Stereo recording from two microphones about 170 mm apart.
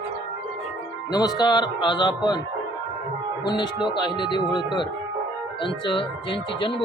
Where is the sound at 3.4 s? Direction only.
25° left (ahead or behind).